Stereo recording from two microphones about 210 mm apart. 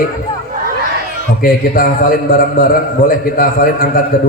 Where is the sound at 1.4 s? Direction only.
40° left (ahead or behind).